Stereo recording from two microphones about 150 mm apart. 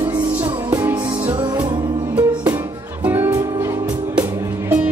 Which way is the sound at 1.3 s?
25° right (ahead or behind).